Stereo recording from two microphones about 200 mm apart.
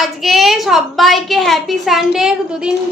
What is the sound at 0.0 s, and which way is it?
A woman's voice, centre (ahead or behind).